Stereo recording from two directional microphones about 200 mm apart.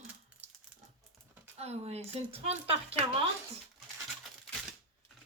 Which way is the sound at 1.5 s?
30° right (ahead or behind).